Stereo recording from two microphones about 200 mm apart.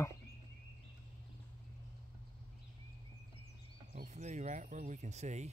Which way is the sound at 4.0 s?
35° right (ahead or behind).